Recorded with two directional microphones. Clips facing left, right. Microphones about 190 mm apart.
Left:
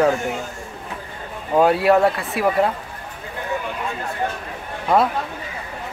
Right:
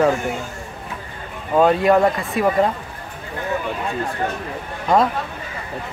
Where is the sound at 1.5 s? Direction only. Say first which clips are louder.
Right 1 dB; 10° left (ahead or behind).